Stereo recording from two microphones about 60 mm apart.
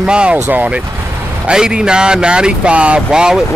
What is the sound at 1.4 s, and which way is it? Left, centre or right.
Speech, centre.